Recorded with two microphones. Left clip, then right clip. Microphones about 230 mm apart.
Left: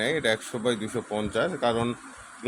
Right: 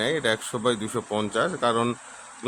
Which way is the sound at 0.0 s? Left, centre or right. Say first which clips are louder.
Right 1 dB; centre.